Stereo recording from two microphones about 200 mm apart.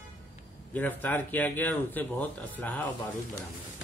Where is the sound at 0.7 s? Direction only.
10° left (ahead or behind).